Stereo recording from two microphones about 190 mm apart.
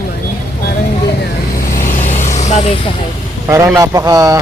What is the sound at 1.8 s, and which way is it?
Vehicle, 40° left (ahead or behind).